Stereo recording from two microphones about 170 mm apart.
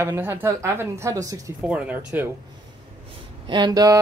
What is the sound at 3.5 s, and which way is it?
Speech, 25° right (ahead or behind).